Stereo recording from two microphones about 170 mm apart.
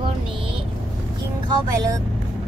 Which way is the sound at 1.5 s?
20° right (ahead or behind).